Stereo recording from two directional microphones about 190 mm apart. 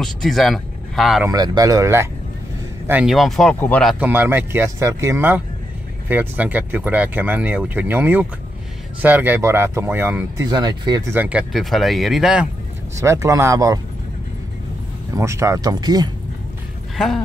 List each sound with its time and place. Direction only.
0.0 s speech: centre (ahead or behind)
1.3 s speech: 20° right (ahead or behind)
2.9 s speech: 5° right (ahead or behind)
4.0 s speech: 10° right (ahead or behind)
11.1 s speech: 10° right (ahead or behind)
12.9 s speech: 15° right (ahead or behind)
15.1 s speech: 15° right (ahead or behind)
16.9 s speech: centre (ahead or behind)